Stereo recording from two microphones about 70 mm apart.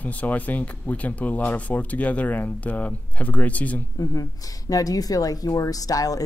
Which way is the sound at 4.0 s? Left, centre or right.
Left.